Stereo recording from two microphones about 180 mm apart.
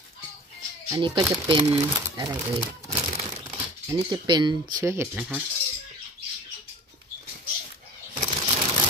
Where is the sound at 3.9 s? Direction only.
25° right (ahead or behind).